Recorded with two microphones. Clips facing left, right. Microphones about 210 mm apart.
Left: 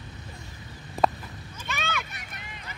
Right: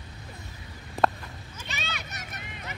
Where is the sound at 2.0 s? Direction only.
45° right (ahead or behind).